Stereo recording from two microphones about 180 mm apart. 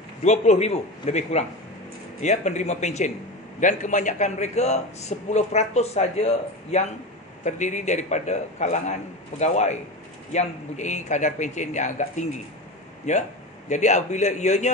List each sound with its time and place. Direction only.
0.2 s a man's voice: 40° left (ahead or behind)